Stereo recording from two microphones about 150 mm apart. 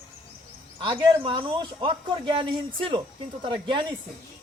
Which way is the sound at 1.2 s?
35° right (ahead or behind).